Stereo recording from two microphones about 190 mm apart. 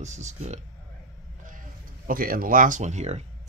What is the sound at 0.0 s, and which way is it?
Speech, 40° right (ahead or behind).